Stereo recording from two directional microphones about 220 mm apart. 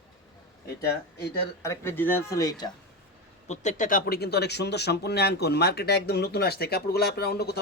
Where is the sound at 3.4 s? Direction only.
30° left (ahead or behind).